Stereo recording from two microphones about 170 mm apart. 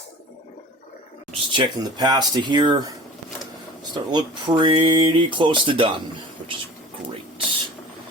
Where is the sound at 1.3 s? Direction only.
25° right (ahead or behind).